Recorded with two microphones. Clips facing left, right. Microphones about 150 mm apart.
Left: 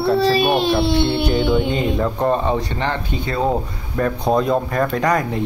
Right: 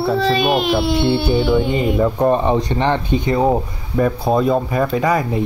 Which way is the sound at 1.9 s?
15° right (ahead or behind).